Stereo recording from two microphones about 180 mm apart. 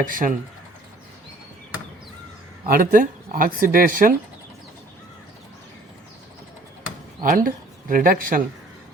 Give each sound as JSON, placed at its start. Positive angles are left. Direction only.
{"t": 0.0, "sound": "speech", "side_deg": -50}
{"t": 2.6, "sound": "speech", "side_deg": -50}
{"t": 7.2, "sound": "speech", "side_deg": -45}